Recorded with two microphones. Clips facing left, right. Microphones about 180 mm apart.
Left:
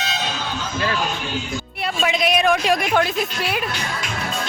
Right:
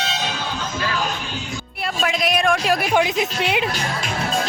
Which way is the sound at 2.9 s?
15° right (ahead or behind).